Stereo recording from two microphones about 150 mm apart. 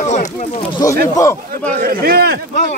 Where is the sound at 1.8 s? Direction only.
80° right.